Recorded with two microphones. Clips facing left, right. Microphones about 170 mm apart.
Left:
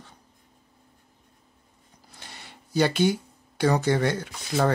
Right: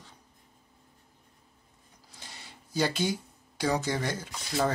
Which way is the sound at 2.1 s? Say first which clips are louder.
Left 3 dB; 60° left (ahead or behind).